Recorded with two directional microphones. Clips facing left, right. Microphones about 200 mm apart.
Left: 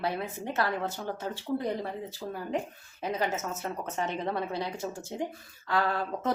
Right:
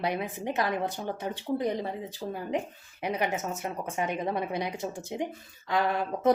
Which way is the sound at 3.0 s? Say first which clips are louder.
Right 1 dB; 15° right (ahead or behind).